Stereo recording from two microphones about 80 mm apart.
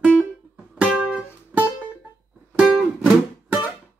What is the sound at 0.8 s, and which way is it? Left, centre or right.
Music, centre.